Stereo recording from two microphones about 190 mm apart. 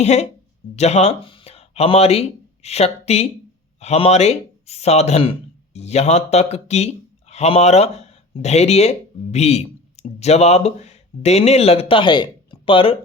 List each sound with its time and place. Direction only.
0.0 s speech: 35° left (ahead or behind)